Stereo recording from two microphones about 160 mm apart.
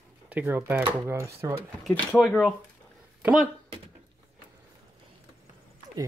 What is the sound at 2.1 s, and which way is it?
Speech, centre (ahead or behind).